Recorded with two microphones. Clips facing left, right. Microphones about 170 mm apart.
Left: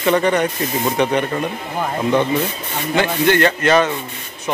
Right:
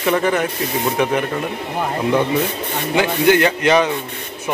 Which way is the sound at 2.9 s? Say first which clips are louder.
Right 1 dB; 10° right (ahead or behind).